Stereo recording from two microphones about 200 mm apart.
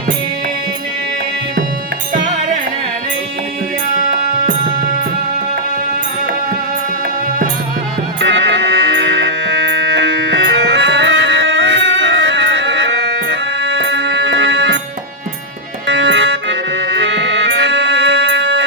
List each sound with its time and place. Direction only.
8.2 s music: 65° right (ahead or behind)
15.9 s music: 65° right (ahead or behind)